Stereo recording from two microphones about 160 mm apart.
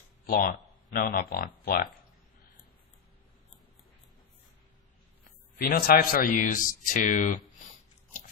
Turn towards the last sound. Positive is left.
turn(degrees=50)  # may be behind; listen again after turning